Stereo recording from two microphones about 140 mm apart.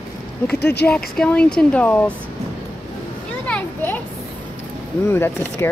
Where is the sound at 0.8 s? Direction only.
10° left (ahead or behind).